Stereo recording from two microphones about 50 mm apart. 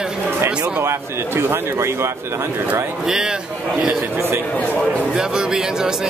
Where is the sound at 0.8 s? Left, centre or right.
Right.